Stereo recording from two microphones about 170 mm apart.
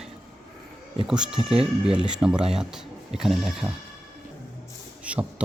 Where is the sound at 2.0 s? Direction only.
5° right (ahead or behind).